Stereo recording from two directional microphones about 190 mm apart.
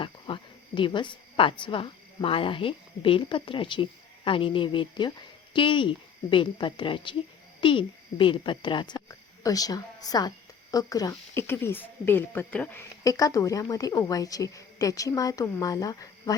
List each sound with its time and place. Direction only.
0.0 s a woman's voice: 25° left (ahead or behind)